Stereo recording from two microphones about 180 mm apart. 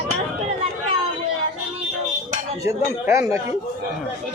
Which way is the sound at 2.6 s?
15° right (ahead or behind).